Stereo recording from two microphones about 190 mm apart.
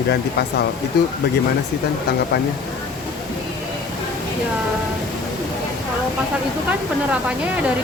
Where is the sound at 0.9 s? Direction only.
60° left (ahead or behind).